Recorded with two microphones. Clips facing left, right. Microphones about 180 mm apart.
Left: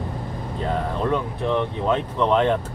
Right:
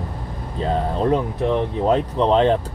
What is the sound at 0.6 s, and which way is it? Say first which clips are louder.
Speech: right 4 dB; 30° right (ahead or behind).